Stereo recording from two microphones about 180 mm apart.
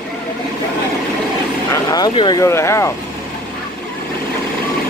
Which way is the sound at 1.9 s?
25° left (ahead or behind).